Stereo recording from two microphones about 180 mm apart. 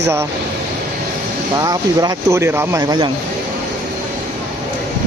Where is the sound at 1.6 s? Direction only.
20° right (ahead or behind).